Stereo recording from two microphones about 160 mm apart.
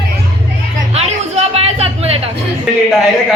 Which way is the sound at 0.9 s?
40° right (ahead or behind).